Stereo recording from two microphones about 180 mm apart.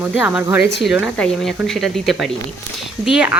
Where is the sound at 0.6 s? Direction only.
70° left (ahead or behind).